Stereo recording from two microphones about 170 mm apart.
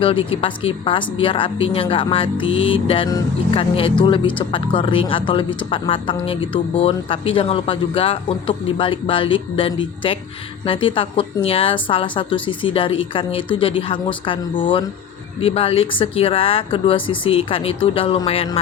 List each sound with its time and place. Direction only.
0.0 s speech: 30° left (ahead or behind)